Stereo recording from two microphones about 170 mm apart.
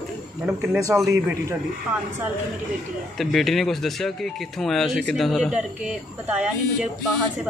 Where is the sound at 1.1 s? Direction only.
15° right (ahead or behind).